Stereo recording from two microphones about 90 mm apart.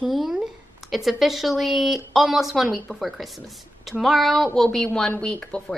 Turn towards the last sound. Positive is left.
turn(degrees=10)  # may be behind; listen again after turning